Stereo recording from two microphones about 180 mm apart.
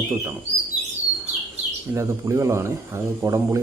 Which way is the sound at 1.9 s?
15° right (ahead or behind).